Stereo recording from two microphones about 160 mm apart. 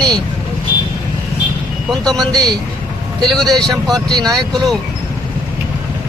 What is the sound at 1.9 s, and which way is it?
Speech, centre (ahead or behind).